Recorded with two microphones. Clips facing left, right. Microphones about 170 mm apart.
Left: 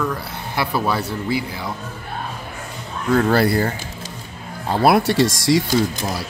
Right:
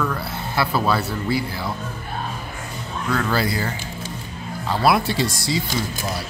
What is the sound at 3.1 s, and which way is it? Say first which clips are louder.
Speech: left 7 dB; 35° left (ahead or behind).